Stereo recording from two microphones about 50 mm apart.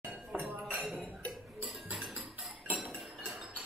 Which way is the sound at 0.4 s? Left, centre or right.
Right.